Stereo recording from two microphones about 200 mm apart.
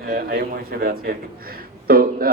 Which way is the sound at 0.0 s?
50° right (ahead or behind).